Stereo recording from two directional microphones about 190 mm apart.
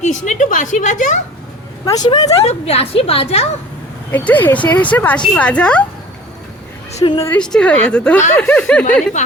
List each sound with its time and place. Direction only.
0.3 s a woman's voice: 40° left (ahead or behind)
2.0 s a woman's voice: 20° left (ahead or behind)
2.4 s a woman's voice: 35° left (ahead or behind)
4.1 s speech: 10° left (ahead or behind)
6.9 s a woman's voice: 30° left (ahead or behind)
7.3 s a woman's voice: 5° left (ahead or behind)